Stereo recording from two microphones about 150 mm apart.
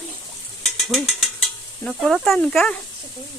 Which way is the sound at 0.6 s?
Centre (ahead or behind).